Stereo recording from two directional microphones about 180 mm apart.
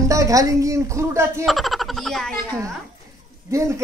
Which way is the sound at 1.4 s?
Centre (ahead or behind).